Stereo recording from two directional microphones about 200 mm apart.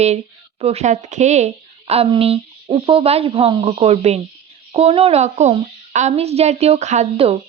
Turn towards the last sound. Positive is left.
turn(degrees=-30)  # may be behind; listen again after turning